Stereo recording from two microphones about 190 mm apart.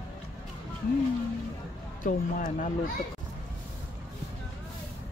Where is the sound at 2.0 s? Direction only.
45° left (ahead or behind).